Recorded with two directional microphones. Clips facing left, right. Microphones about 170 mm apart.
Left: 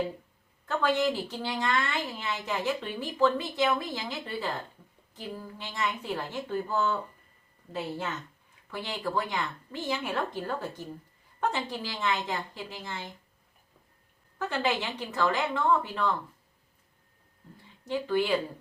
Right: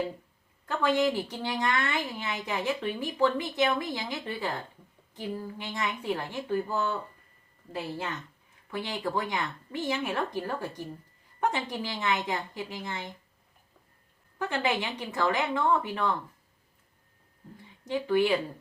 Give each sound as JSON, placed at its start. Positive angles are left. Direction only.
{"t": 0.7, "sound": "a woman's voice", "side_deg": -15}
{"t": 14.3, "sound": "a woman's voice", "side_deg": -15}
{"t": 17.8, "sound": "a woman's voice", "side_deg": -15}